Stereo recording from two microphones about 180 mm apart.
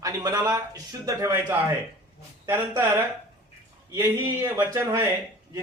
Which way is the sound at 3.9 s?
10° right (ahead or behind).